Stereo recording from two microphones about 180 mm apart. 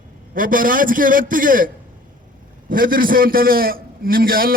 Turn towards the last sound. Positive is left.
turn(degrees=-55)  # may be behind; listen again after turning